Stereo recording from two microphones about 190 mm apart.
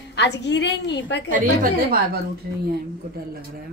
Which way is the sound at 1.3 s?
50° right (ahead or behind).